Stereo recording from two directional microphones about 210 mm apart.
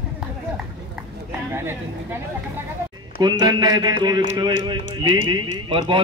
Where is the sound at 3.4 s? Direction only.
20° right (ahead or behind).